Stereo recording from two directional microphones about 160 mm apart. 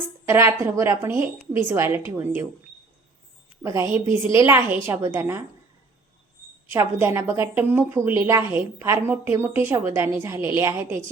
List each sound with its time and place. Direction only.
0.3 s a woman's voice: 15° right (ahead or behind)
3.6 s a woman's voice: 15° right (ahead or behind)
6.7 s a woman's voice: 15° right (ahead or behind)